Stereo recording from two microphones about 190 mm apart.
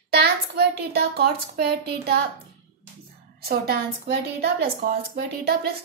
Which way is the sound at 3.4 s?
55° right (ahead or behind).